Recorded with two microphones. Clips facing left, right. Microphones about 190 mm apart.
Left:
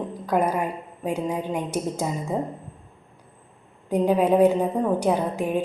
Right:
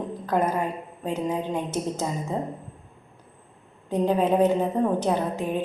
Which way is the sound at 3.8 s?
10° left (ahead or behind).